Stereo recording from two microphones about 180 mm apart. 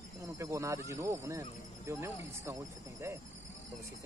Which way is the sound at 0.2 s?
15° right (ahead or behind).